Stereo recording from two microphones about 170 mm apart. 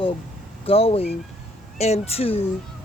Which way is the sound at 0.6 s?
35° left (ahead or behind).